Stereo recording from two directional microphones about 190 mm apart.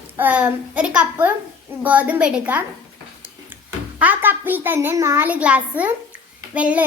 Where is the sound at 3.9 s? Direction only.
10° right (ahead or behind).